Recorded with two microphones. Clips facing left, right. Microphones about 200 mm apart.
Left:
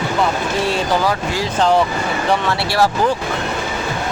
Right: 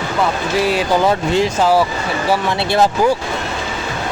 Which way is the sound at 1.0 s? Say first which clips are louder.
Right 5 dB; 20° right (ahead or behind).